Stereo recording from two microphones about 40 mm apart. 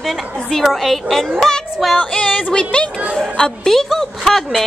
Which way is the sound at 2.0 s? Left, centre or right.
Left.